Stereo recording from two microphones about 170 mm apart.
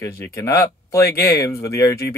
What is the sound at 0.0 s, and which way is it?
Speech, 20° left (ahead or behind).